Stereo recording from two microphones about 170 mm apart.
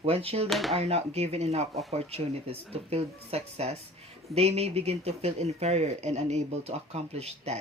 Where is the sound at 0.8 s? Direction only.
35° right (ahead or behind).